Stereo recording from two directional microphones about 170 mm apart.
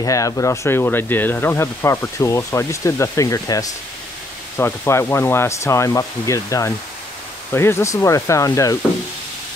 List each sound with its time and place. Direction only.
0.0 s speech: 20° left (ahead or behind)